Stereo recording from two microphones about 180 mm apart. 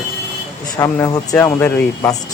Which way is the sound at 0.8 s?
20° left (ahead or behind).